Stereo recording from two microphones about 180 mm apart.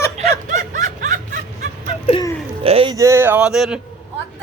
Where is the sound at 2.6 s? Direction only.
30° right (ahead or behind).